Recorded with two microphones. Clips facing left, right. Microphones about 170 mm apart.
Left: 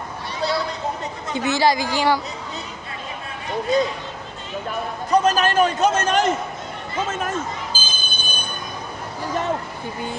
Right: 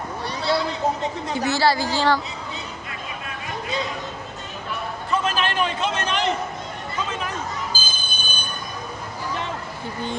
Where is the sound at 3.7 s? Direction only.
45° left (ahead or behind).